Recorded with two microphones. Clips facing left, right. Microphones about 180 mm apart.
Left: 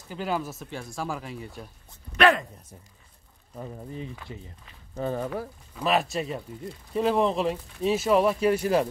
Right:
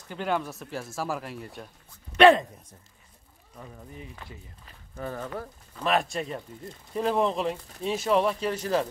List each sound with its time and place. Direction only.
0.1 s speech: 5° left (ahead or behind)
2.1 s speech: 25° right (ahead or behind)
3.5 s speech: 30° left (ahead or behind)
5.3 s speech: 10° left (ahead or behind)